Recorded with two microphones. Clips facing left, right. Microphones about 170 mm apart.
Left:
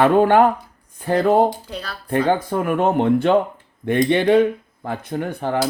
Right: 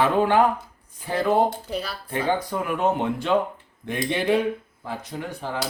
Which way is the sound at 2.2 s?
50° left (ahead or behind).